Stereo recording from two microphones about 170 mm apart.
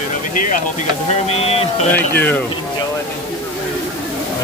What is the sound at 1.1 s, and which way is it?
Speech, 40° left (ahead or behind).